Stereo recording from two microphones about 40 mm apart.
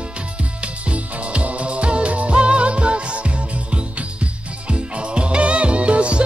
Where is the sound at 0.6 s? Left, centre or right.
Right.